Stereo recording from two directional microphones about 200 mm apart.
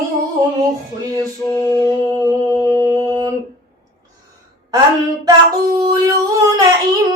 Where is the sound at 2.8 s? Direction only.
15° right (ahead or behind).